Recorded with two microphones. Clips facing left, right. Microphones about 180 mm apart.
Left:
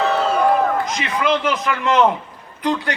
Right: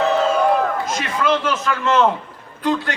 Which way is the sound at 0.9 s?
15° left (ahead or behind).